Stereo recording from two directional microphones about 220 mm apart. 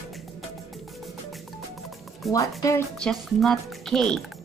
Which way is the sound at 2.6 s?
15° left (ahead or behind).